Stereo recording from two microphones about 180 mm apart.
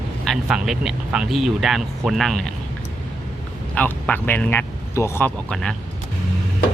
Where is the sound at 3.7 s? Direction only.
10° left (ahead or behind).